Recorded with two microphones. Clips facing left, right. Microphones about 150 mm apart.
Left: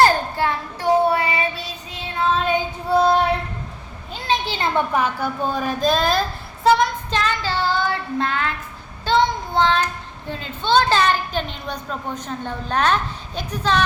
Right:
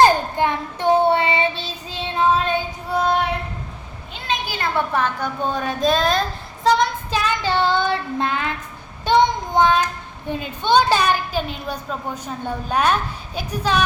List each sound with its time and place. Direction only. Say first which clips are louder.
0.0 s child singing: right 2 dB; 20° right (ahead or behind)
2.9 s female singing: left 5 dB; 30° left (ahead or behind)
4.1 s a child's voice: left 3 dB; 30° left (ahead or behind); by 6.2 s centre (ahead or behind)
6.7 s child singing: left 1 dB; centre (ahead or behind)
7.2 s a woman's voice: right 3 dB; 15° right (ahead or behind)